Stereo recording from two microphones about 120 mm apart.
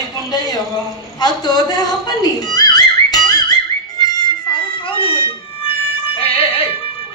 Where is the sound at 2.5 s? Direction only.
35° left (ahead or behind).